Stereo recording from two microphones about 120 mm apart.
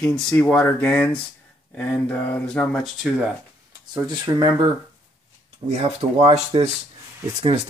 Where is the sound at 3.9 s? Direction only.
35° right (ahead or behind).